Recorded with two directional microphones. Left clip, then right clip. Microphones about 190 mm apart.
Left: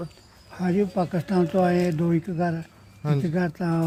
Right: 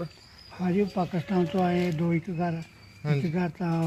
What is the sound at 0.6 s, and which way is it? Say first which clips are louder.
Speech: left 3 dB; 20° left (ahead or behind).